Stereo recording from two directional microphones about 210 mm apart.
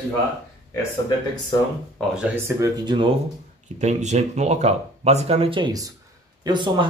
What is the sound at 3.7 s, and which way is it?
Speech, 35° right (ahead or behind).